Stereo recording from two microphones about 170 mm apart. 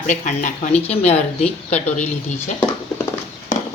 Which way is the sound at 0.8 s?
35° left (ahead or behind).